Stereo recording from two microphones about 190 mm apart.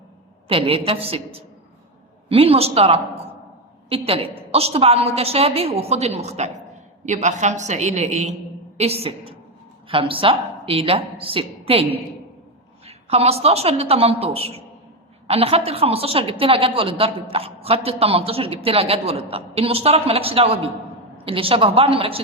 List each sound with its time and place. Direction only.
0.4 s a woman's voice: 30° right (ahead or behind)